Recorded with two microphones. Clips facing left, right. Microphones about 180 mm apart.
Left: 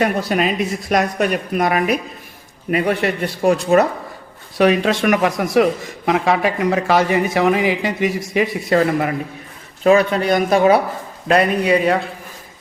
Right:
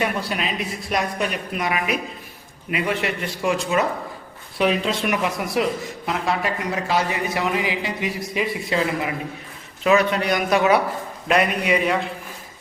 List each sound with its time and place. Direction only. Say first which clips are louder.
0.0 s speech: left 7 dB; 45° left (ahead or behind)
4.6 s speech: left 6 dB; 75° left (ahead or behind); by 5.6 s 60° left (ahead or behind)
6.1 s speech: left 7 dB; 90° left; by 9.1 s 50° left (ahead or behind)
9.8 s speech: left 5 dB; 35° left (ahead or behind)